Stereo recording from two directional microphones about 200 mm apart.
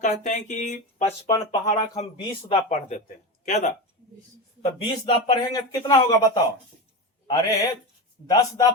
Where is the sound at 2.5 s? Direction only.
30° left (ahead or behind).